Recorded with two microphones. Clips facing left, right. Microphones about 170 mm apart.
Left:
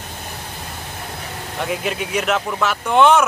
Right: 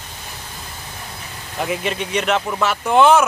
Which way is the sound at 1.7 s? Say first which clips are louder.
Even; 5° left (ahead or behind).